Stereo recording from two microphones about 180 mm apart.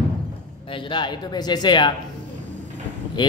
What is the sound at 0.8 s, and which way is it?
Mantra, 25° left (ahead or behind).